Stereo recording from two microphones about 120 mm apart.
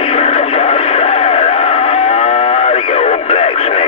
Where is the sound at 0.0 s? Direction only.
55° left (ahead or behind).